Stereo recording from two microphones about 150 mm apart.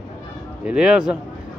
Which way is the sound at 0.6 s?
5° right (ahead or behind).